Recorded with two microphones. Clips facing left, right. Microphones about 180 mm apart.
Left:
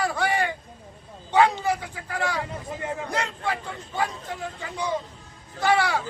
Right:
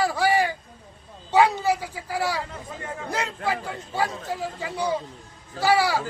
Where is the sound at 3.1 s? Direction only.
5° right (ahead or behind).